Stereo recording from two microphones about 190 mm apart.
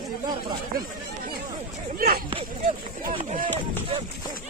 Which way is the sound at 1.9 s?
50° right (ahead or behind).